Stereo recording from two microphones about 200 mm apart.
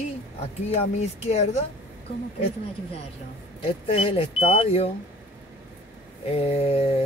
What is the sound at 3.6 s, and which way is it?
Speech, 30° left (ahead or behind).